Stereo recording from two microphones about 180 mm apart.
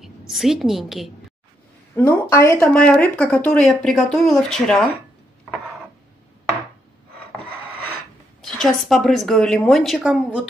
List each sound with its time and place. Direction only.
0.3 s speech: centre (ahead or behind)
2.0 s a woman's voice: 15° left (ahead or behind)
8.4 s speech: centre (ahead or behind)